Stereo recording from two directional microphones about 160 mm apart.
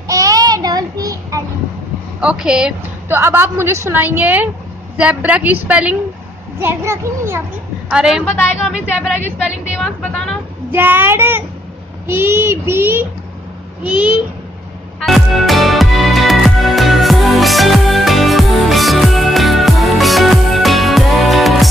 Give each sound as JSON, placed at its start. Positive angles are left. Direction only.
{"t": 0.1, "sound": "child singing", "side_deg": -20}
{"t": 2.1, "sound": "a woman's voice", "side_deg": -5}
{"t": 7.9, "sound": "a woman's voice", "side_deg": -5}
{"t": 10.0, "sound": "a woman's voice", "side_deg": 5}
{"t": 10.7, "sound": "a woman's voice", "side_deg": -10}
{"t": 15.0, "sound": "music", "side_deg": 0}